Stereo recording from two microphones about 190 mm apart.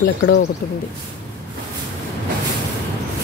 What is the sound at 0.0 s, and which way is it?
Speech, 60° left (ahead or behind).